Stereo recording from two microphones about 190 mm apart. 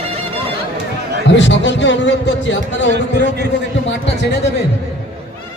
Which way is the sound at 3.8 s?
65° left (ahead or behind).